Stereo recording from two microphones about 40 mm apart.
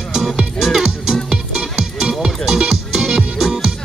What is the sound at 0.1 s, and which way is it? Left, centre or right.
Music, centre.